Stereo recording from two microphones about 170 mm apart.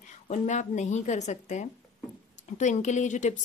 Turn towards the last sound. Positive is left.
turn(degrees=45)  # may be behind; listen again after turning